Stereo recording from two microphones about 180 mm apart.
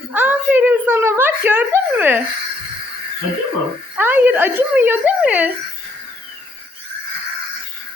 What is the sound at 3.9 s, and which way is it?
A woman's voice, 10° right (ahead or behind).